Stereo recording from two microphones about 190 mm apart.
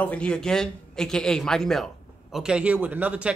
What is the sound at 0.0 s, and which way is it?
Speech, 5° left (ahead or behind).